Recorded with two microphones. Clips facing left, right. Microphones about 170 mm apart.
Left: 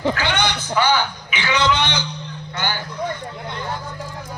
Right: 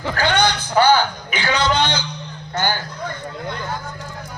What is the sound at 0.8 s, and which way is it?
A man's voice, 50° right (ahead or behind).